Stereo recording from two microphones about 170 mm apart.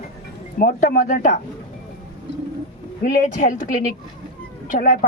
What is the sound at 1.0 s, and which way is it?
Speech, 45° left (ahead or behind).